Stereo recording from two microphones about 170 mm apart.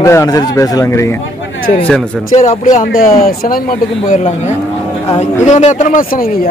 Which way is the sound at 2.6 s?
50° left (ahead or behind).